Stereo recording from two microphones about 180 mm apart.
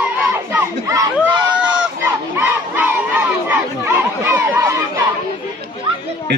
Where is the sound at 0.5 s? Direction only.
15° right (ahead or behind).